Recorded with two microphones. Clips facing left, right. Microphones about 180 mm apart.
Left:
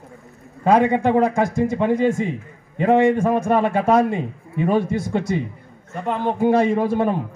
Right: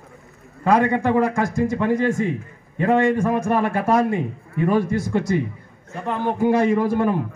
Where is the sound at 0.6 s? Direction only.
25° left (ahead or behind).